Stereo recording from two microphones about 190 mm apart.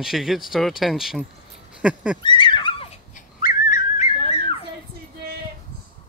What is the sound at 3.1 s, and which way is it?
Whistling, 45° left (ahead or behind).